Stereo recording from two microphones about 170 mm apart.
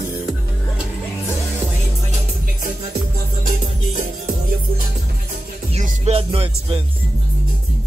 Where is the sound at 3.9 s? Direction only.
45° right (ahead or behind).